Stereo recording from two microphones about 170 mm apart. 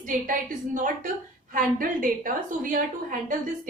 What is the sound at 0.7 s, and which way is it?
A woman's voice, 50° right (ahead or behind).